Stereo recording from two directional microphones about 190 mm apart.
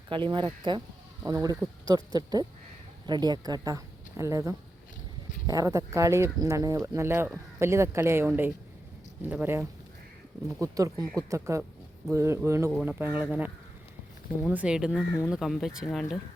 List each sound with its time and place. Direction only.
0.1 s speech: 25° right (ahead or behind); by 15.8 s centre (ahead or behind)